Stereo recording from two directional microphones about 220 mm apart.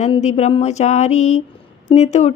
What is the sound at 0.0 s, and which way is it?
A woman's voice, 30° left (ahead or behind).